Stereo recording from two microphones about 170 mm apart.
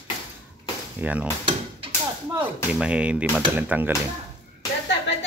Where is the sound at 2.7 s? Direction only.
5° right (ahead or behind).